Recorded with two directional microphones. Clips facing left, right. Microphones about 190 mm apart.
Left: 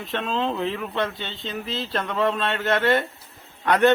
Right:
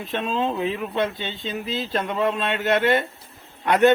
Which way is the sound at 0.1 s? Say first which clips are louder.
Right 1 dB; 15° right (ahead or behind).